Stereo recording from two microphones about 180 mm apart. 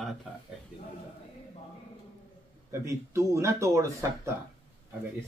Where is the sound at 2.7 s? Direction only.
15° right (ahead or behind).